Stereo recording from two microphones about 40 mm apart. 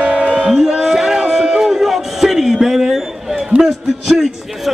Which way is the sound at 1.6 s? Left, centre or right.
Centre.